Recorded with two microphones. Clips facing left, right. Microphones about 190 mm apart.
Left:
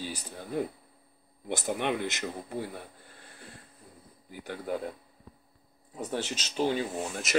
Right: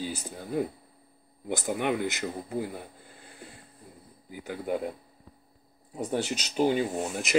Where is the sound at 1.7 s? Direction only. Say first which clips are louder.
Right 2 dB; 10° right (ahead or behind).